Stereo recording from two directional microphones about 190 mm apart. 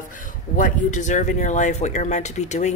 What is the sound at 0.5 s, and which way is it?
Speech, 45° left (ahead or behind).